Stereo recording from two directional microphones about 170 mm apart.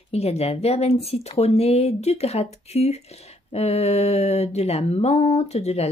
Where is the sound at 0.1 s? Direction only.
40° left (ahead or behind).